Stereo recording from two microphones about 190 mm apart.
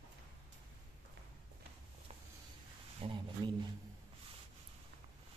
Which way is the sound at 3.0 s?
25° right (ahead or behind).